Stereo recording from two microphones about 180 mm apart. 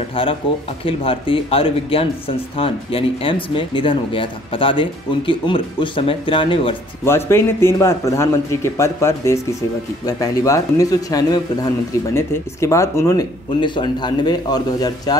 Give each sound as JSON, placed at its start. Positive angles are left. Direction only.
{"t": 0.1, "sound": "speech", "side_deg": 30}
{"t": 7.1, "sound": "a man's voice", "side_deg": 15}